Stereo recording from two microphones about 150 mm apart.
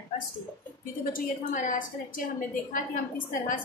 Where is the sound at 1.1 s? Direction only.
60° left (ahead or behind).